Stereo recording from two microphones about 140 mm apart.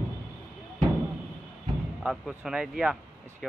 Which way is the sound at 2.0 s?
5° right (ahead or behind).